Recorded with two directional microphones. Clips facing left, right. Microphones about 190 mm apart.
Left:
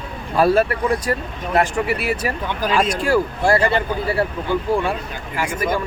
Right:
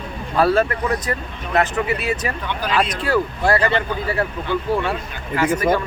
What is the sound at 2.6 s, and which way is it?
Speech, 45° left (ahead or behind).